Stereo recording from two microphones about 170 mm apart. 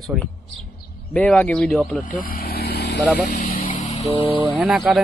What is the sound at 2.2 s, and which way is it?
Vehicle, 60° left (ahead or behind).